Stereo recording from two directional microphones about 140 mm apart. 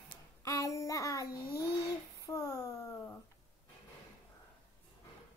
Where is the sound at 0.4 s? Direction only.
20° left (ahead or behind).